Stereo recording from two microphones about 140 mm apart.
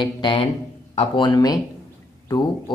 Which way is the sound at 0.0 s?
35° left (ahead or behind).